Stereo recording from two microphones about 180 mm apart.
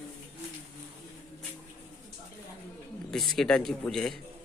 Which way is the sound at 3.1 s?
Centre (ahead or behind).